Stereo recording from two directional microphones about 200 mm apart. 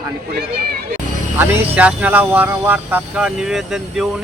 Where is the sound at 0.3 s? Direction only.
50° right (ahead or behind).